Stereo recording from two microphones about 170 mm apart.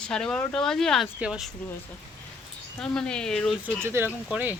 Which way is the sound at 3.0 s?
5° left (ahead or behind).